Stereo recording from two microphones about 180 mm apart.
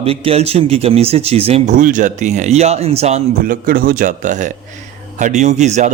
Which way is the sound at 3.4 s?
55° right (ahead or behind).